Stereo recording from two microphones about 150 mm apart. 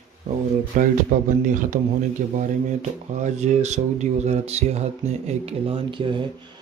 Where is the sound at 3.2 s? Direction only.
50° right (ahead or behind); by 6.3 s 35° right (ahead or behind).